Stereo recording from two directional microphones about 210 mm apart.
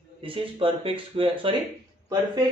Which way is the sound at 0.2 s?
25° right (ahead or behind).